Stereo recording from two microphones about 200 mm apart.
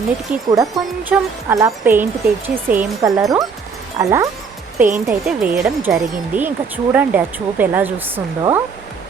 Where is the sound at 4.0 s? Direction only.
15° right (ahead or behind).